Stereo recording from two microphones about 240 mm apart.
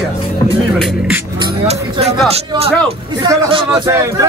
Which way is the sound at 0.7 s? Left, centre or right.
Centre.